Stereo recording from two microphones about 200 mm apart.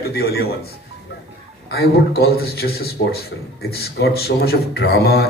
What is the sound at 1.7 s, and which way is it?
A man's voice, 50° left (ahead or behind).